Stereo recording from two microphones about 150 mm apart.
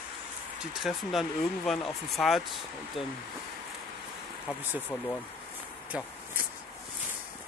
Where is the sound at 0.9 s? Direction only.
Centre (ahead or behind).